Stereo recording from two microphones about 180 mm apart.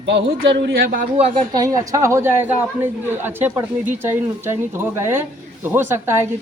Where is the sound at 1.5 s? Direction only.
20° right (ahead or behind).